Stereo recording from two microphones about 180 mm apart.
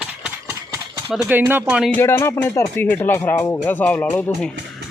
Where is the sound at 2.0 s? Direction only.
15° left (ahead or behind).